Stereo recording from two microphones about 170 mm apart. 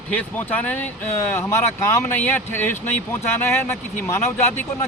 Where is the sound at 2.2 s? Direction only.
10° left (ahead or behind).